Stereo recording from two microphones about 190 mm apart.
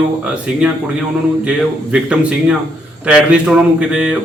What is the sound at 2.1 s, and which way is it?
Speech, 5° right (ahead or behind).